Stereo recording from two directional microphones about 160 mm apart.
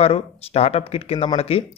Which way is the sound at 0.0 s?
40° left (ahead or behind).